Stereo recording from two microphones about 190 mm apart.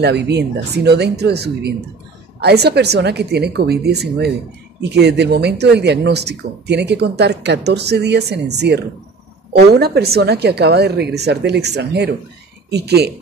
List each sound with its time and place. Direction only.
0.0 s speech: 60° right (ahead or behind)